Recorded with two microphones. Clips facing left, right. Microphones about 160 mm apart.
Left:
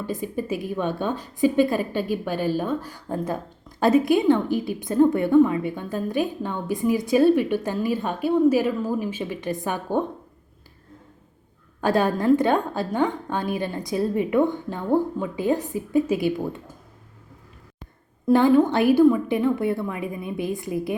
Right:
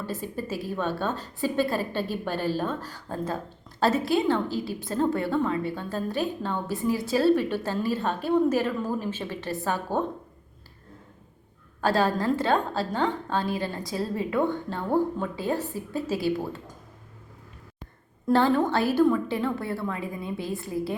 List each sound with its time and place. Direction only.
0.0 s a woman's voice: 15° left (ahead or behind)
11.8 s a woman's voice: 20° left (ahead or behind)
18.3 s a woman's voice: 15° left (ahead or behind)